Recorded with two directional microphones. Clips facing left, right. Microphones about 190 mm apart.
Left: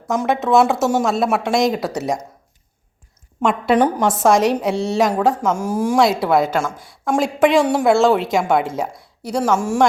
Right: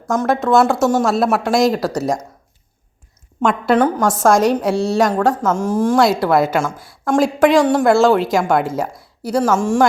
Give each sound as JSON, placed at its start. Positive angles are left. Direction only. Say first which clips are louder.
{"t": 0.1, "sound": "a woman's voice", "louder": "right 1 dB", "side_deg": 0}
{"t": 3.4, "sound": "a woman's voice", "louder": "right 1 dB", "side_deg": 0}
{"t": 3.8, "sound": "a woman's voice", "louder": "right 1 dB", "side_deg": 15}
{"t": 4.2, "sound": "a woman's voice", "louder": "right 2 dB", "side_deg": 0}
{"t": 5.5, "sound": "a woman's voice", "louder": "right 2 dB", "side_deg": 10}